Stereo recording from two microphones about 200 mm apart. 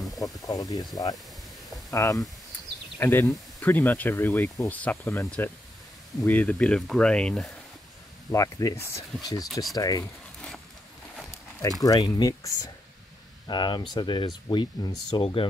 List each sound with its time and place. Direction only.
0.2 s speech: 20° left (ahead or behind)
8.3 s speech: 15° left (ahead or behind)
11.8 s speech: 20° left (ahead or behind)